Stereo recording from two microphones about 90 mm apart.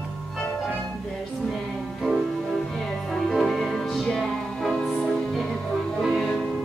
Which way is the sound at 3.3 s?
5° left (ahead or behind).